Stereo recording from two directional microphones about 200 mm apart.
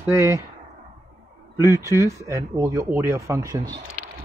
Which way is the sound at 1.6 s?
15° right (ahead or behind).